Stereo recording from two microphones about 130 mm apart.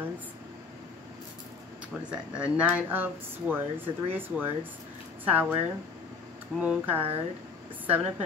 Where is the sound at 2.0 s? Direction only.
10° right (ahead or behind).